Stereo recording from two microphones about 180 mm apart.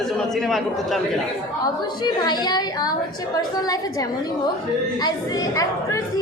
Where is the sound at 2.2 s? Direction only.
25° left (ahead or behind).